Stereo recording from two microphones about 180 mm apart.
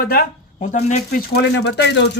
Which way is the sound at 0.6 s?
40° left (ahead or behind).